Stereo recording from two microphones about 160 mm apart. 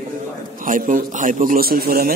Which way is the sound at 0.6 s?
55° right (ahead or behind).